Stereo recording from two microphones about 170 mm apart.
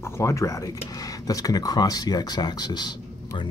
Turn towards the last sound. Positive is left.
turn(degrees=25)  # may be behind; listen again after turning